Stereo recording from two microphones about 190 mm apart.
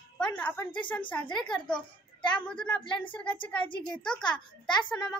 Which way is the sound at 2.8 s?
25° left (ahead or behind).